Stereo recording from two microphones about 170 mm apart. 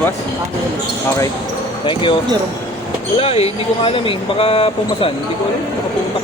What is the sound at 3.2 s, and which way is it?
Speech, 35° left (ahead or behind).